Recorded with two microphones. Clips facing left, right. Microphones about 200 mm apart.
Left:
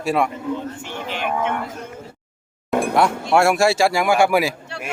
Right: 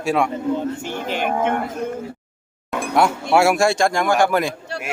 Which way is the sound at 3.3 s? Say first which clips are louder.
Even; centre (ahead or behind).